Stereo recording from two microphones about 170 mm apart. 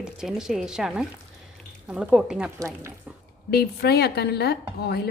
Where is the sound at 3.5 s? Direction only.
70° left (ahead or behind).